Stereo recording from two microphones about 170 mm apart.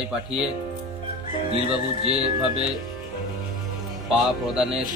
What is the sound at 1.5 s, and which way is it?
Speech, 35° right (ahead or behind).